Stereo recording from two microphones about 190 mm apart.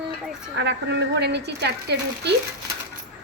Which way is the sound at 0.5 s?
65° right (ahead or behind).